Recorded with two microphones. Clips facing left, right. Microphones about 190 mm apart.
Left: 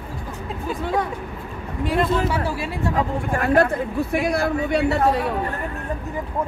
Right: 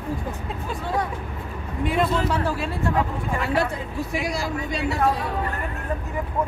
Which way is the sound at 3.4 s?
50° left (ahead or behind).